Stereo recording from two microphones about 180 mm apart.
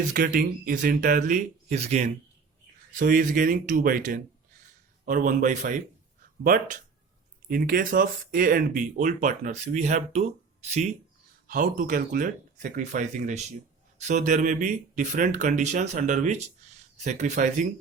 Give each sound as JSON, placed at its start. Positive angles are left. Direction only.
{"t": 0.1, "sound": "speech", "side_deg": -50}
{"t": 3.0, "sound": "speech", "side_deg": -50}
{"t": 11.4, "sound": "speech", "side_deg": -50}